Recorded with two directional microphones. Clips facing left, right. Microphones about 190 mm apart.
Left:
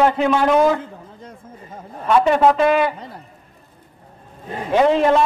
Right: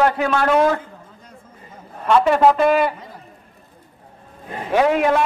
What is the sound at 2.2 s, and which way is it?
Speech, 5° right (ahead or behind).